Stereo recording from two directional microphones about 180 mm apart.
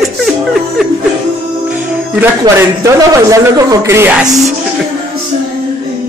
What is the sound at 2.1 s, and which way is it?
Speech, 10° right (ahead or behind).